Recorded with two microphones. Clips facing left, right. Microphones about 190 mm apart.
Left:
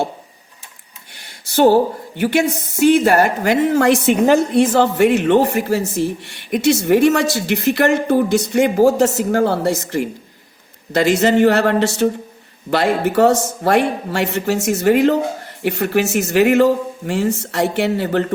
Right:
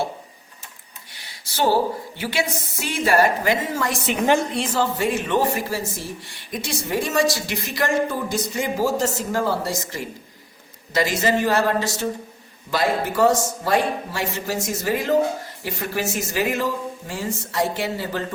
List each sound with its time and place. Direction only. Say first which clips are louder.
1.1 s speech: left 13 dB; 55° left (ahead or behind)
4.1 s speech: left 7 dB; 50° left (ahead or behind)